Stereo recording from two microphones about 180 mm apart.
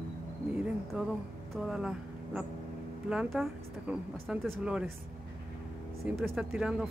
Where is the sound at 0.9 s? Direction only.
5° right (ahead or behind).